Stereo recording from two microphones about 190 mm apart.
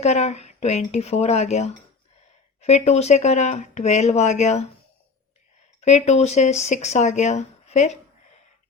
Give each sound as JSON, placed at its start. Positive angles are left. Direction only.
{"t": 0.0, "sound": "speech", "side_deg": 35}
{"t": 5.8, "sound": "speech", "side_deg": 35}